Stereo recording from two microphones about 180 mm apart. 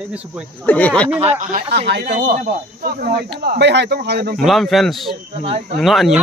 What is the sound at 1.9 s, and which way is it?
Speech, 65° right (ahead or behind).